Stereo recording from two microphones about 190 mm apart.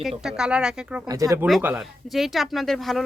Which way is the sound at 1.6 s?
5° right (ahead or behind).